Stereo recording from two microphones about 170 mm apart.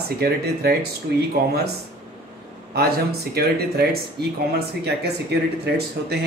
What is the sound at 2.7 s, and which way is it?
Speech, 65° right (ahead or behind).